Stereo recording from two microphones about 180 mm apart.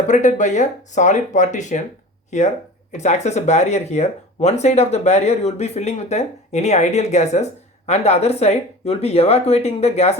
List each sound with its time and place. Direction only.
0.1 s speech: 45° left (ahead or behind)